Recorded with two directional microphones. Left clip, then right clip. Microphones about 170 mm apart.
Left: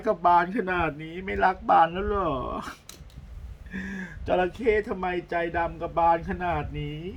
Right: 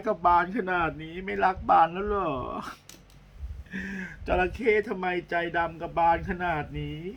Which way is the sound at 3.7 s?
15° right (ahead or behind).